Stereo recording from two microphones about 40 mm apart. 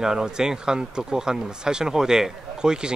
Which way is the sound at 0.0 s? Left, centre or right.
Centre.